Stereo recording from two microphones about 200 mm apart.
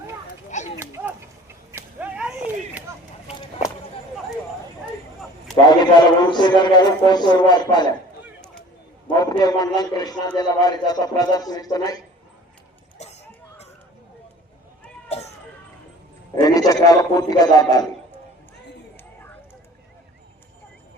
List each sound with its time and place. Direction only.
0.5 s a sound: 35° left (ahead or behind)
0.8 s a sound: 15° right (ahead or behind)
5.5 s a man's voice: 20° left (ahead or behind)
9.0 s a man's voice: 20° left (ahead or behind)
13.0 s music: 35° left (ahead or behind)
16.4 s a man's voice: 20° left (ahead or behind)